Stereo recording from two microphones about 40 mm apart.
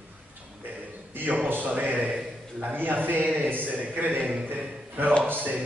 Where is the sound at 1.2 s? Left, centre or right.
Right.